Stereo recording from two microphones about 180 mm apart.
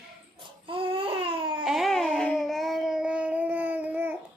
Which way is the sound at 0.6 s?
30° right (ahead or behind).